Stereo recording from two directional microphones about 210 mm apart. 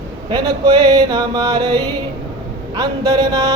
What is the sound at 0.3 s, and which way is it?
Singing, 20° right (ahead or behind).